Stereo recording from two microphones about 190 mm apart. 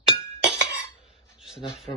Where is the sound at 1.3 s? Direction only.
5° right (ahead or behind).